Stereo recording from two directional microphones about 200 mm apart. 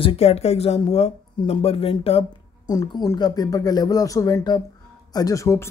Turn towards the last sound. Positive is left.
turn(degrees=15)  # may be behind; listen again after turning